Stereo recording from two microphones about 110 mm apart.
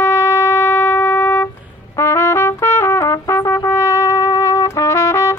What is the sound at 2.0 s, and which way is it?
Trumpet, 25° left (ahead or behind).